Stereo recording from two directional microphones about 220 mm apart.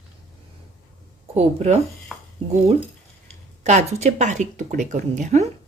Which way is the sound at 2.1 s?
Centre (ahead or behind).